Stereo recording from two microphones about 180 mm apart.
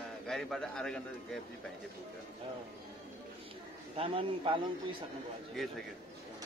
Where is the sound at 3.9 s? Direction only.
30° right (ahead or behind).